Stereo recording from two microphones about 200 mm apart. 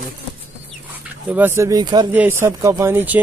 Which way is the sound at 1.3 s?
10° right (ahead or behind).